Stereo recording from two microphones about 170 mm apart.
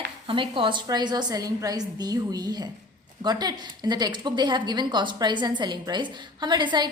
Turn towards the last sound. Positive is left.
turn(degrees=-25)  # may be behind; listen again after turning